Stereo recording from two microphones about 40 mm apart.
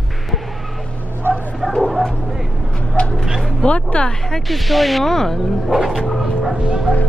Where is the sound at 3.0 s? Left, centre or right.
Left.